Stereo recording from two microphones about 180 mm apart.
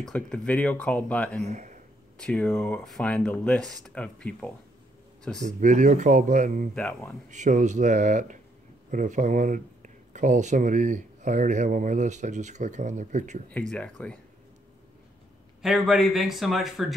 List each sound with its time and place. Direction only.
0.0 s speech: 5° left (ahead or behind)
1.4 s speech: 40° right (ahead or behind)
2.1 s speech: 5° left (ahead or behind)
5.4 s speech: 45° right (ahead or behind)
6.7 s speech: 5° left (ahead or behind)
7.2 s speech: 45° right (ahead or behind)
13.5 s speech: 5° left (ahead or behind)
15.6 s speech: centre (ahead or behind)